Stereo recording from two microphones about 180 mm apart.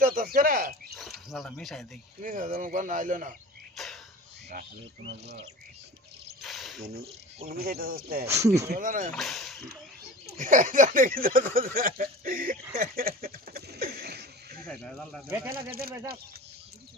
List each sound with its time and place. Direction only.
0.0 s speech: 50° right (ahead or behind)
1.3 s speech: centre (ahead or behind)
2.2 s speech: 50° right (ahead or behind)
3.8 s a sound: centre (ahead or behind)
5.1 s speech: 70° right (ahead or behind)
6.4 s a sound: centre (ahead or behind)
7.4 s speech: 55° right (ahead or behind)
9.1 s speech: centre (ahead or behind)
10.3 s speech: 45° right (ahead or behind)
14.7 s speech: 5° left (ahead or behind)
15.3 s speech: 10° right (ahead or behind)